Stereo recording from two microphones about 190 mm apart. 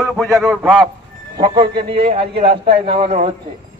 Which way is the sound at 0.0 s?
Centre (ahead or behind).